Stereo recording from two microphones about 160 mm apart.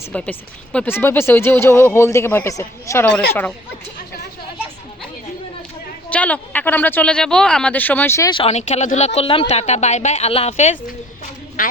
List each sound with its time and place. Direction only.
0.1 s speech: 5° left (ahead or behind)
6.1 s speech: 10° left (ahead or behind)
8.3 s speech: 40° left (ahead or behind)
11.6 s a woman's voice: 60° left (ahead or behind)